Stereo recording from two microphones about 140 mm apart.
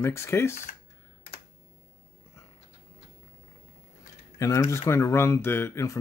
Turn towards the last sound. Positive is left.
turn(degrees=20)  # may be behind; listen again after turning